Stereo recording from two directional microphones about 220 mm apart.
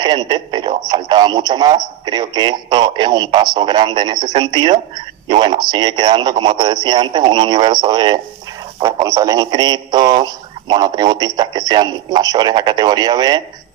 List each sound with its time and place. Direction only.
0.0 s speech: 20° right (ahead or behind)